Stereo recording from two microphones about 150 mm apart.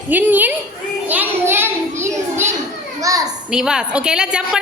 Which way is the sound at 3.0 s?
25° right (ahead or behind).